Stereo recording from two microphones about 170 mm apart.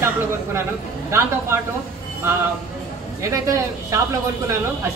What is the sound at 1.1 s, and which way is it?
Speech, 15° right (ahead or behind).